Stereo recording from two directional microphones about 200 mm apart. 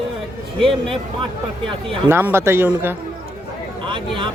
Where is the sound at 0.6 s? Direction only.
25° right (ahead or behind).